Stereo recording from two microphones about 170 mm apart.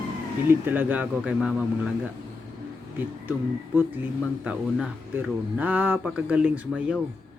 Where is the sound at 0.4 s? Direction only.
10° right (ahead or behind).